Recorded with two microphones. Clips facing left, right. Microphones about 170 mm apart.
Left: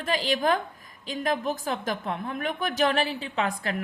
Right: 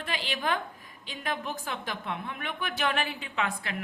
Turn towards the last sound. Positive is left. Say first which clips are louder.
# left 4 dB
turn(degrees=40)  # may be behind; listen again after turning